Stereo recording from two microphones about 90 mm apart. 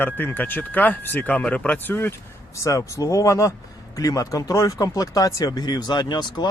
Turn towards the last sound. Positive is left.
turn(degrees=55)  # may be behind; listen again after turning